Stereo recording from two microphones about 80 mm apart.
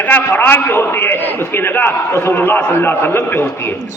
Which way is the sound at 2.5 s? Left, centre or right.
Left.